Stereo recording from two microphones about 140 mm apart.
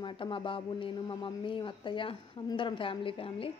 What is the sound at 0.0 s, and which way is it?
Speech, 35° left (ahead or behind).